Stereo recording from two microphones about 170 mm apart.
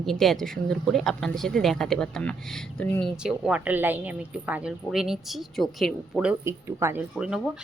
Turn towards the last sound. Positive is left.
turn(degrees=-5)  # may be behind; listen again after turning